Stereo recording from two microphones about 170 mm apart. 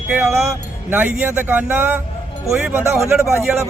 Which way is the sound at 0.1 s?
10° right (ahead or behind).